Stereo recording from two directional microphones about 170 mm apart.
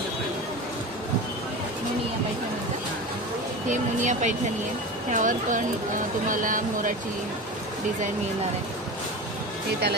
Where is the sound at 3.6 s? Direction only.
45° right (ahead or behind).